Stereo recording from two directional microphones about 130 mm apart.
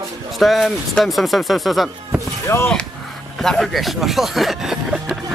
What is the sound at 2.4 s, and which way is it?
Speech, 20° left (ahead or behind).